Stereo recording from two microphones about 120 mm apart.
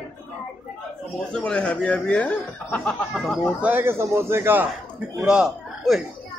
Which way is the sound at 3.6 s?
15° right (ahead or behind).